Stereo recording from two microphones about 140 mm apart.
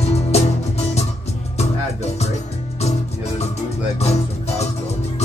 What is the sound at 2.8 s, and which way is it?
Music, 50° left (ahead or behind).